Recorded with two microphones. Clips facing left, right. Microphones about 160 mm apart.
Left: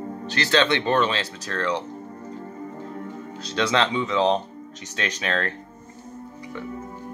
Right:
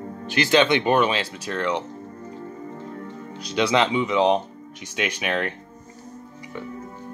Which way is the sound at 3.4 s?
15° right (ahead or behind).